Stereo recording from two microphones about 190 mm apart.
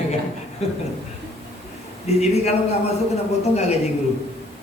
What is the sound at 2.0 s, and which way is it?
A man's voice, 35° left (ahead or behind).